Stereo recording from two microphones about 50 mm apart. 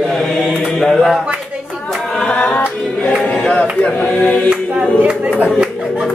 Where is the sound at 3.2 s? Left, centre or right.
Left.